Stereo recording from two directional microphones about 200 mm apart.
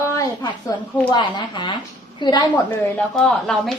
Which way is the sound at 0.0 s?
15° left (ahead or behind).